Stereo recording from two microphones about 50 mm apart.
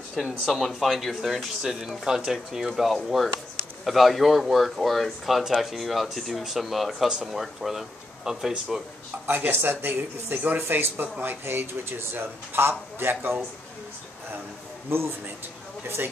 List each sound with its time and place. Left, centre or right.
0.1 s speech: centre
7.1 s speech: centre
9.2 s a man's voice: right
10.4 s speech: right
11.1 s a man's voice: right
14.9 s a man's voice: right